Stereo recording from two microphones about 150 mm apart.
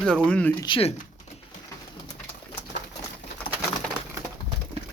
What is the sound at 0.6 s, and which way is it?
Speech, 35° left (ahead or behind).